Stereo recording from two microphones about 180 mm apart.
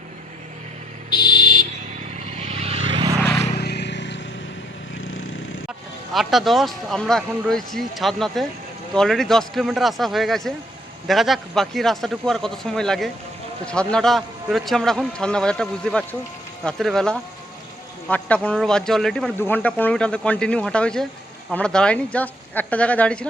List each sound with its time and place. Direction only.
1.1 s a sound: 25° left (ahead or behind)
2.1 s vehicle: 40° right (ahead or behind)
3.6 s vehicle: 65° left (ahead or behind)
6.1 s speech: centre (ahead or behind)